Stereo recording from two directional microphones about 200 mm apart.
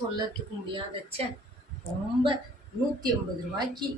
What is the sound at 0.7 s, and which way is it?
Speech, 25° right (ahead or behind).